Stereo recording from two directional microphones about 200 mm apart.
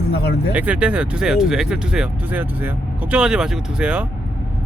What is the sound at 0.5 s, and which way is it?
Speech, 5° right (ahead or behind).